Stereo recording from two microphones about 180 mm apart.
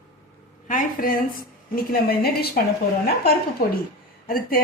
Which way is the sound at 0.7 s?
50° left (ahead or behind).